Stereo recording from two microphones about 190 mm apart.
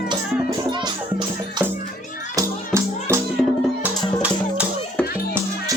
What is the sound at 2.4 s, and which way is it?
Music, 15° right (ahead or behind).